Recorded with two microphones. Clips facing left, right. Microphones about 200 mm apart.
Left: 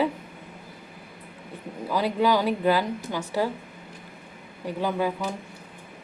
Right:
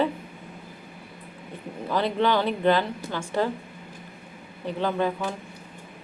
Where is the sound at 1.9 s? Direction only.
10° left (ahead or behind).